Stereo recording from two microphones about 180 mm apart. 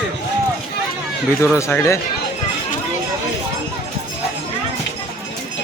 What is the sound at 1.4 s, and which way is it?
Speech, 15° left (ahead or behind).